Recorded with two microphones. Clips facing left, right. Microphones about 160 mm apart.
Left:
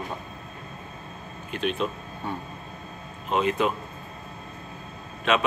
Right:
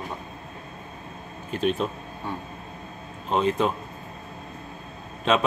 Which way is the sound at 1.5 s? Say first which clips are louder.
Right 2 dB; 40° right (ahead or behind).